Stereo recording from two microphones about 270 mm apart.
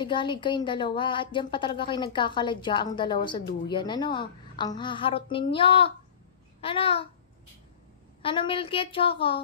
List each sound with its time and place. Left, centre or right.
0.0 s a woman's voice: centre
8.2 s a woman's voice: centre